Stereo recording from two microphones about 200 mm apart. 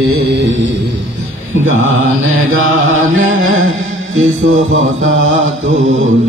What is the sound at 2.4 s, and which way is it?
Music, 80° right.